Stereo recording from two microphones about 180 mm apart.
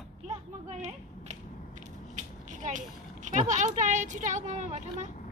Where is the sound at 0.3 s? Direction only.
35° right (ahead or behind).